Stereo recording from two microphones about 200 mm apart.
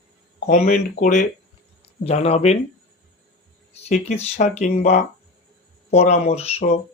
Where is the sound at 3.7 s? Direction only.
35° left (ahead or behind).